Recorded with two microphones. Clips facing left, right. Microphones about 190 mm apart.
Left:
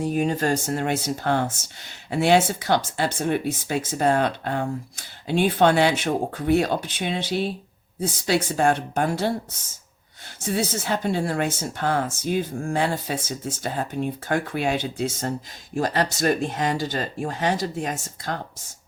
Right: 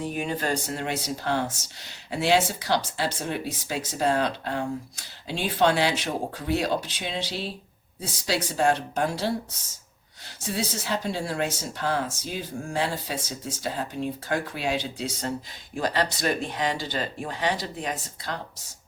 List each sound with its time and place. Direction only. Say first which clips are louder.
0.0 s speech: left 6 dB; 40° left (ahead or behind)
10.4 s speech: left 5 dB; 50° left (ahead or behind)